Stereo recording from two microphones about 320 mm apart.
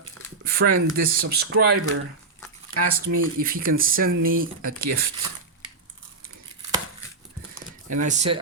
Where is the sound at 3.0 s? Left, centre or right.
Right.